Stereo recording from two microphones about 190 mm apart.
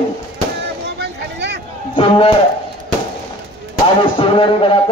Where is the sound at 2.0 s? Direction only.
30° left (ahead or behind).